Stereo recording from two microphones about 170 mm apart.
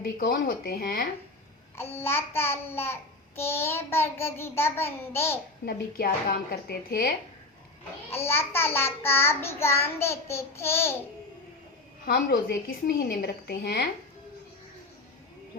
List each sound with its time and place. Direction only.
0.0 s a woman's voice: 60° left (ahead or behind)
1.7 s child singing: 15° left (ahead or behind)
5.6 s a woman's voice: 60° left (ahead or behind)
8.2 s child singing: 15° left (ahead or behind)
12.0 s a woman's voice: 60° left (ahead or behind)